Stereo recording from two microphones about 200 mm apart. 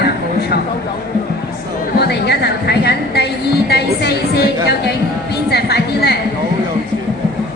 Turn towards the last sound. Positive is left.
turn(degrees=55)  # may be behind; listen again after turning